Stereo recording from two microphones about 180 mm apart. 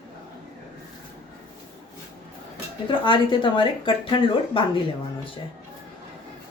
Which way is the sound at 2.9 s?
25° left (ahead or behind).